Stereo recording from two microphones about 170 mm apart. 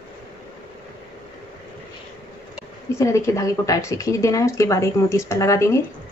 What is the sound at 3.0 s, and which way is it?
Speech, 20° left (ahead or behind).